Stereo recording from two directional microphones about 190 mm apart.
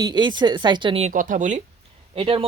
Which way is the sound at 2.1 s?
30° right (ahead or behind).